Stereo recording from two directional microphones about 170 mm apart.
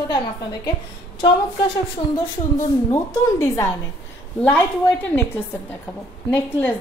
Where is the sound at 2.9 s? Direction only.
20° left (ahead or behind).